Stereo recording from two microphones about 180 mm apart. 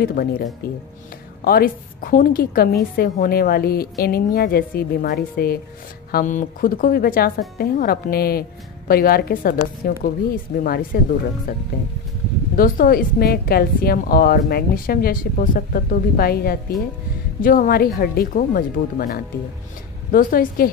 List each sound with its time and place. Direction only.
0.0 s a woman's voice: 50° left (ahead or behind)
12.5 s a woman's voice: 50° left (ahead or behind)